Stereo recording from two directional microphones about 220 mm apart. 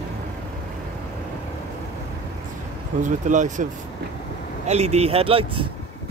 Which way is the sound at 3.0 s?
35° right (ahead or behind).